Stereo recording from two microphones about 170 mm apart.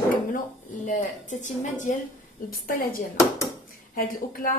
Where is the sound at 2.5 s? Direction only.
55° left (ahead or behind).